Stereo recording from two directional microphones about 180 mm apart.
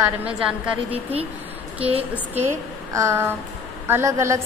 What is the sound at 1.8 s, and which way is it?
Speech, 30° right (ahead or behind).